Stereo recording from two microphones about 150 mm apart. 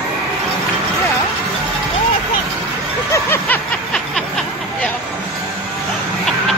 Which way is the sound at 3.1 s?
15° left (ahead or behind).